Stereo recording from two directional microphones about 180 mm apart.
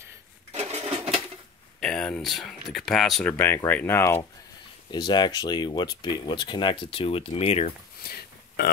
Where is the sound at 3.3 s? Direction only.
10° left (ahead or behind).